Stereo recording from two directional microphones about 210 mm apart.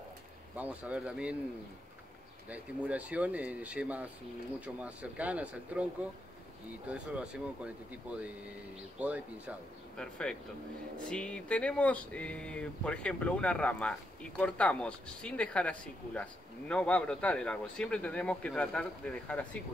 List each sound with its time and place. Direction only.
0.6 s speech: 5° right (ahead or behind)
2.5 s speech: 5° right (ahead or behind)
6.9 s speech: 5° right (ahead or behind)
9.0 s speech: 5° right (ahead or behind)
9.9 s speech: 5° left (ahead or behind)